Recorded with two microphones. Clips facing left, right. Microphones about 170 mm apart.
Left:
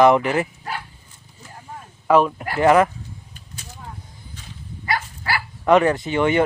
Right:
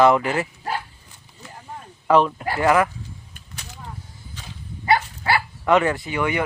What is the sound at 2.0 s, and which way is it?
Speech, 5° left (ahead or behind).